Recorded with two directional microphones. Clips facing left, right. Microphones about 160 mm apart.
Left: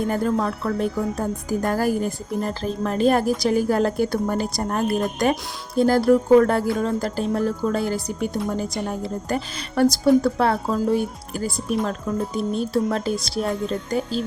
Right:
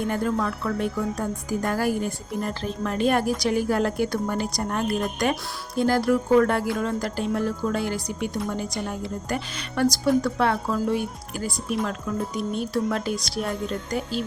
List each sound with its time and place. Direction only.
0.1 s speech: 30° left (ahead or behind)